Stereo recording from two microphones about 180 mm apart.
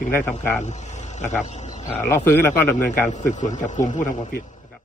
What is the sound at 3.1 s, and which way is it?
Speech, 40° left (ahead or behind).